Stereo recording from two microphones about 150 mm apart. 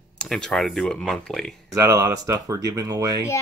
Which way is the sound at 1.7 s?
20° right (ahead or behind).